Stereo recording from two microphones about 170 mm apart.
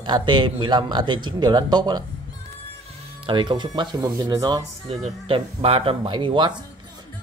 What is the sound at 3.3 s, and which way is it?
A man's voice, 25° right (ahead or behind).